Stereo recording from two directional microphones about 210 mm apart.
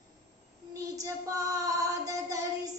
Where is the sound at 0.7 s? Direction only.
15° right (ahead or behind).